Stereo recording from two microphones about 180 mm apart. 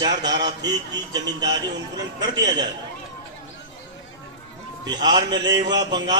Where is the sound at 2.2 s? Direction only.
20° right (ahead or behind).